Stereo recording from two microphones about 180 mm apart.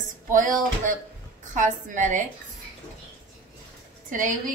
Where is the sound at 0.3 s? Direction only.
50° right (ahead or behind).